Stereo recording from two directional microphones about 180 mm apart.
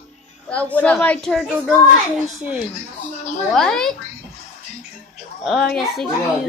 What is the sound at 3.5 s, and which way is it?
Speech, 5° left (ahead or behind).